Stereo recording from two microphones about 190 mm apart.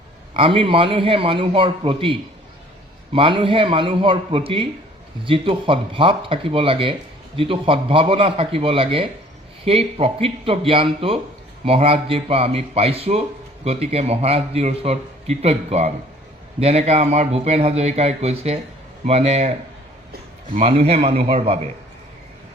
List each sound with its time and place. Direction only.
0.3 s a man's voice: 30° right (ahead or behind)
20.6 s a man's voice: 30° right (ahead or behind)